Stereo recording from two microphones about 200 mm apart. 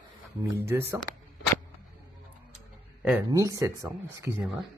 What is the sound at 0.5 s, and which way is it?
Speech, 15° right (ahead or behind).